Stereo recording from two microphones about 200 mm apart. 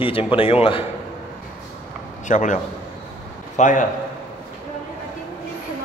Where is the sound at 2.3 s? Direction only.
40° left (ahead or behind).